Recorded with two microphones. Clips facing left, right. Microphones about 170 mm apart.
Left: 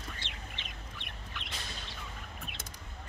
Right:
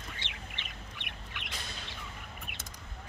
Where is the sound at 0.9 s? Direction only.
20° right (ahead or behind).